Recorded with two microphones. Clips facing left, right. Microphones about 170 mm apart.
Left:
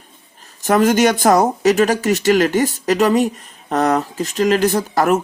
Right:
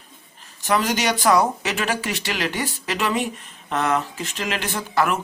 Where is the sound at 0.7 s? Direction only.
50° left (ahead or behind).